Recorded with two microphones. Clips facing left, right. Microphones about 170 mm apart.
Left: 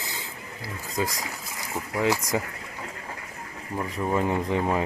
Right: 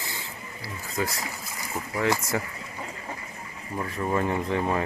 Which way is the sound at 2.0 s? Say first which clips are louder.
Left 1 dB; 15° left (ahead or behind).